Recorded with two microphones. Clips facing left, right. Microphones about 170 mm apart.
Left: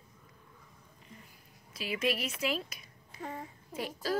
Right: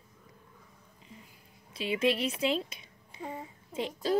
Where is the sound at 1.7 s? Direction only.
30° right (ahead or behind).